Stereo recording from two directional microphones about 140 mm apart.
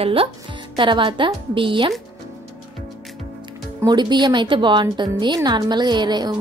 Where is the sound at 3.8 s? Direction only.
30° right (ahead or behind).